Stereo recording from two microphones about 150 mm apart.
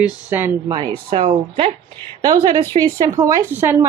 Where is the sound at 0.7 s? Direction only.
30° right (ahead or behind).